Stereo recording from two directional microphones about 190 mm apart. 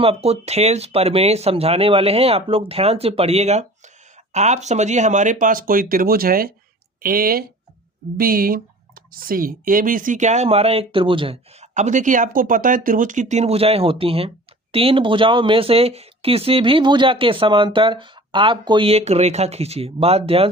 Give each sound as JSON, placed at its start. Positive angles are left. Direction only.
{"t": 0.0, "sound": "speech", "side_deg": -30}